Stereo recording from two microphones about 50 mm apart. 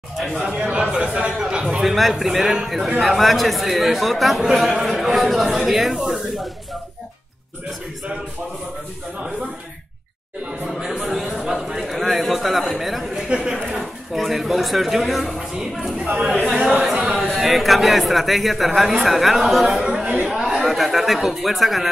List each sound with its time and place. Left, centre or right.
0.2 s speech: centre
0.6 s speech: right
1.8 s a man's voice: centre
11.0 s a man's voice: centre
13.3 s speech: centre
13.7 s speech: centre
16.7 s speech: centre
17.0 s a man's voice: centre
19.8 s a sound: centre
20.2 s a man's voice: centre